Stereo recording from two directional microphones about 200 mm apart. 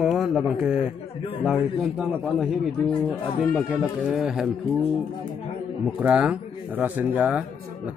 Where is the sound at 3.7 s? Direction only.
5° right (ahead or behind).